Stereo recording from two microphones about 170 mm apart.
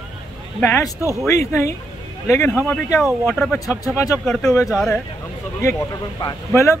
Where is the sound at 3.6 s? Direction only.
20° left (ahead or behind).